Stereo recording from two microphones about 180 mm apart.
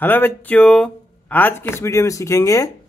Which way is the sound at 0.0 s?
10° left (ahead or behind).